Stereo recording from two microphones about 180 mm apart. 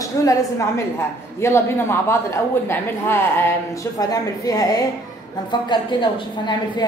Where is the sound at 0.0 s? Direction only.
20° left (ahead or behind).